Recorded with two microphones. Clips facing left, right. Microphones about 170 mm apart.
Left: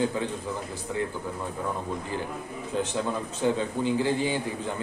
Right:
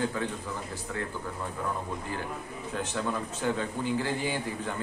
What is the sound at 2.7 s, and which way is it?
A man's voice, 25° left (ahead or behind).